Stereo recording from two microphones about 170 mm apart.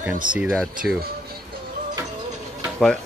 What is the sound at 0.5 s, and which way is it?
Speech, centre (ahead or behind).